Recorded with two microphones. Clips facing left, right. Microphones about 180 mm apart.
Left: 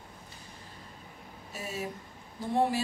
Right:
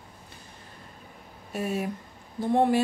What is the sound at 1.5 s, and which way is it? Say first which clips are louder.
Speech: right 9 dB; 55° right (ahead or behind).